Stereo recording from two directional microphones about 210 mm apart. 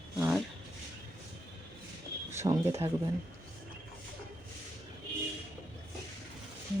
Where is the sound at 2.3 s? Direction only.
10° right (ahead or behind).